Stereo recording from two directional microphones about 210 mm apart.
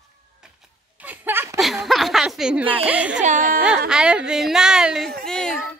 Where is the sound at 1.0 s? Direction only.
10° right (ahead or behind).